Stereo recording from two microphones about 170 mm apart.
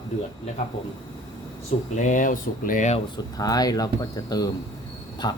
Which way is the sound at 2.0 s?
50° left (ahead or behind).